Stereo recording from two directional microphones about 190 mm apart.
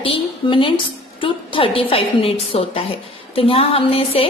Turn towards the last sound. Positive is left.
turn(degrees=30)  # may be behind; listen again after turning